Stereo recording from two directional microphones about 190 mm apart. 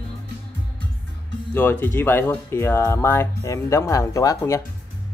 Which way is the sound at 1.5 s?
10° left (ahead or behind).